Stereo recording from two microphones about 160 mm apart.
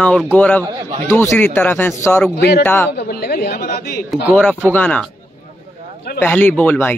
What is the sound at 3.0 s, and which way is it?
Speech, 70° left (ahead or behind).